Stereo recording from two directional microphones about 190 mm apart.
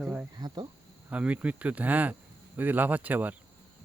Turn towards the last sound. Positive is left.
turn(degrees=-10)  # may be behind; listen again after turning